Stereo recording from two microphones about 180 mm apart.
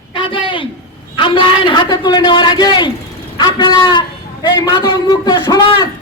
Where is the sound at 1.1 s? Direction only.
25° left (ahead or behind).